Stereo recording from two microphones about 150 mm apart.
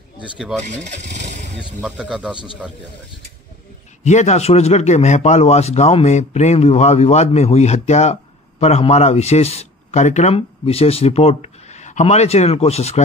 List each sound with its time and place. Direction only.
0.7 s speech: 50° right (ahead or behind)
1.6 s speech: 5° right (ahead or behind)
4.0 s a man's voice: 50° left (ahead or behind)